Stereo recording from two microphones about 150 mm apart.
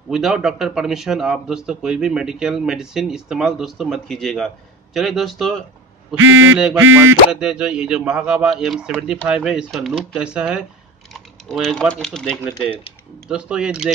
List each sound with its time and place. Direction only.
0.1 s a man's voice: 5° right (ahead or behind)
6.5 s a sound: 10° right (ahead or behind)
7.4 s a man's voice: 5° right (ahead or behind)
13.3 s a man's voice: 5° right (ahead or behind)